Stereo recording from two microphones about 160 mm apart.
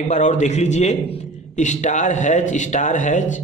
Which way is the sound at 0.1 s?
45° left (ahead or behind).